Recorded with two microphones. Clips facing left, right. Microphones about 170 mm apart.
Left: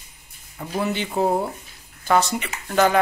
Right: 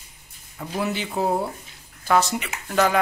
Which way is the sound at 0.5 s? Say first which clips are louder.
Left 2 dB; 5° left (ahead or behind).